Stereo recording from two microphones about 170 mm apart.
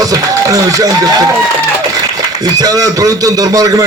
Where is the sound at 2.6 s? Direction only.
20° right (ahead or behind).